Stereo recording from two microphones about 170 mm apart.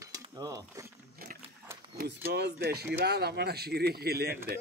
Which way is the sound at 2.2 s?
75° right (ahead or behind).